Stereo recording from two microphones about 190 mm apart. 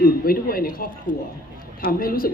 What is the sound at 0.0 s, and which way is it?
A woman's voice, 50° left (ahead or behind).